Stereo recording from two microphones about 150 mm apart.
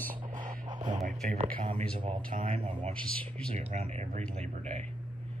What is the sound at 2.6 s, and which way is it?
Speech, 40° right (ahead or behind).